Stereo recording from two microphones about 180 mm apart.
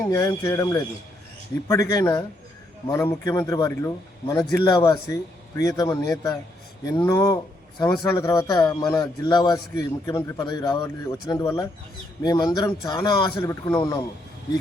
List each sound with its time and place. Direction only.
0.1 s speech: 15° left (ahead or behind)